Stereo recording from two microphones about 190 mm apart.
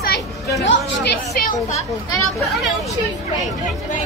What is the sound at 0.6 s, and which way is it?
Chatter, 65° left (ahead or behind).